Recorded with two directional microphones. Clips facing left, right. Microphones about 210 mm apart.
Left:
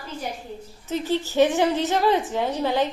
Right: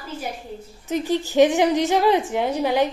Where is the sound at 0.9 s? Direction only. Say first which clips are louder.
Right 2 dB; 15° right (ahead or behind).